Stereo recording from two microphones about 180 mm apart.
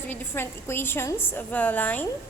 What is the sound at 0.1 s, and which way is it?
A woman's voice, 10° left (ahead or behind).